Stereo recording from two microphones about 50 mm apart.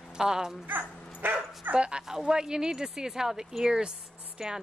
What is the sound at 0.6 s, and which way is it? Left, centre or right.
Dog, right.